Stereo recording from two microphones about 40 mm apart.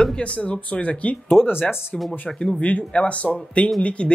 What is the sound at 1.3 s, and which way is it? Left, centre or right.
Speech, left.